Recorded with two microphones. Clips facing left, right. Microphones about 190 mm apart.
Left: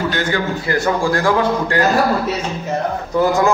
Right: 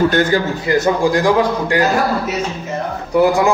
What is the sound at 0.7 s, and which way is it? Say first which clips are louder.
A man's voice: right 4 dB; 20° right (ahead or behind).